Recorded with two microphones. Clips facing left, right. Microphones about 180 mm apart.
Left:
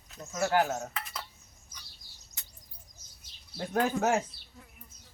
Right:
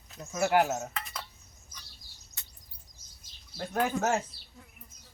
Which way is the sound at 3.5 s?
15° left (ahead or behind).